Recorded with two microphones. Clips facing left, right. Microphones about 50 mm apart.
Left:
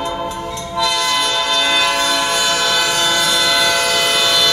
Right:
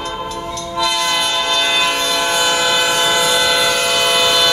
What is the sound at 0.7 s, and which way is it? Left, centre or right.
Train, centre.